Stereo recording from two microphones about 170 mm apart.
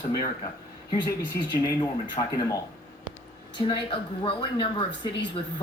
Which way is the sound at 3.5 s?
25° left (ahead or behind).